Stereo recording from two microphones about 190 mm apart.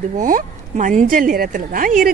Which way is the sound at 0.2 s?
45° right (ahead or behind).